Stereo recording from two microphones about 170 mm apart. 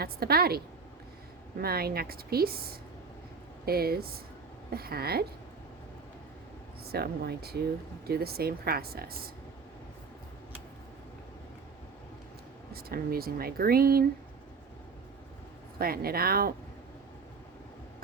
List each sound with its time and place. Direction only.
0.0 s speech: 65° right (ahead or behind)
6.8 s speech: 65° right (ahead or behind)
12.7 s speech: 60° right (ahead or behind)
15.8 s speech: 60° right (ahead or behind)